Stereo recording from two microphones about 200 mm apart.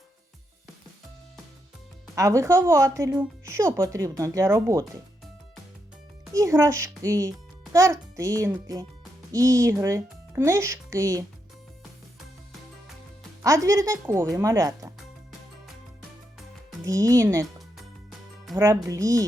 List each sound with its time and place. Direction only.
2.1 s speech: 15° right (ahead or behind)
6.3 s speech: 15° right (ahead or behind)
13.4 s speech: 15° right (ahead or behind)
16.8 s speech: 15° right (ahead or behind)
18.5 s speech: 15° right (ahead or behind)